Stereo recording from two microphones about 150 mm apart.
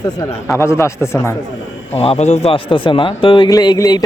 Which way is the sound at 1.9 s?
45° left (ahead or behind).